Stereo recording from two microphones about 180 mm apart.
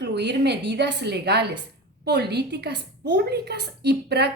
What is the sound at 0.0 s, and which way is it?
A woman's voice, 70° right (ahead or behind).